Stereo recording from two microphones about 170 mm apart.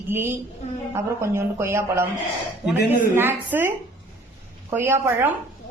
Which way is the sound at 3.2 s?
10° right (ahead or behind).